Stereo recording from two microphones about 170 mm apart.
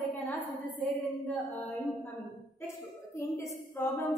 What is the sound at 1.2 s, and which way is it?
Female singing, 10° left (ahead or behind).